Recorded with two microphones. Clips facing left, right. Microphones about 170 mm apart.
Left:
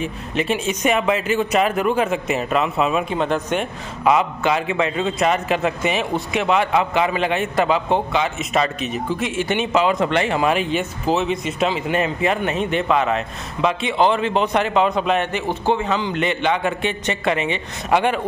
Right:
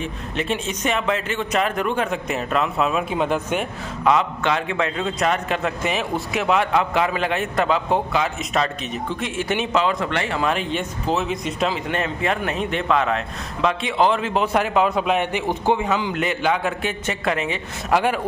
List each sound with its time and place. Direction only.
0.0 s speech: 5° left (ahead or behind)
3.2 s speech: 10° right (ahead or behind)
4.0 s speech: 5° left (ahead or behind)
9.9 s speech: 20° left (ahead or behind)
10.5 s speech: 5° left (ahead or behind)